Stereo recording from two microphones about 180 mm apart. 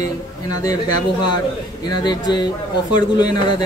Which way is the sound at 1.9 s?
25° left (ahead or behind).